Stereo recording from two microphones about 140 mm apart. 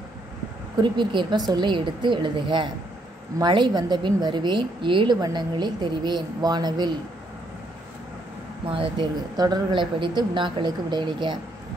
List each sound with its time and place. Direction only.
0.7 s a woman's voice: 35° right (ahead or behind)
8.6 s a woman's voice: 40° right (ahead or behind)